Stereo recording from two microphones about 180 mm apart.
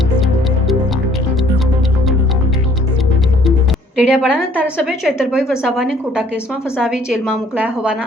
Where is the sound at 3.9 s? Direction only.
5° right (ahead or behind).